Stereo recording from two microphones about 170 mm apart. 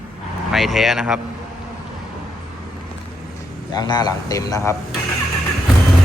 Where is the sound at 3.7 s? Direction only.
25° left (ahead or behind).